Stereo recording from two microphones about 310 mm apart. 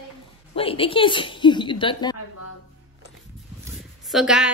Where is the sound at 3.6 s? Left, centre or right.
Centre.